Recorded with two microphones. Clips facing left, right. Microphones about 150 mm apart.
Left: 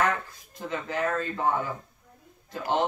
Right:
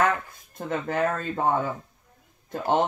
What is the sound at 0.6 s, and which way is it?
Speech, 55° right (ahead or behind).